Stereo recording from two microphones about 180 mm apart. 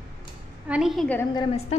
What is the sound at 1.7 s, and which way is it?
Speech, 35° left (ahead or behind).